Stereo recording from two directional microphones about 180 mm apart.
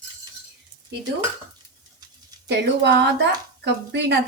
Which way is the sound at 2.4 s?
70° right (ahead or behind).